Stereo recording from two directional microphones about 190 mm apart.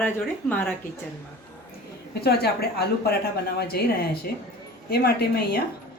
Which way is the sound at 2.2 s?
55° left (ahead or behind).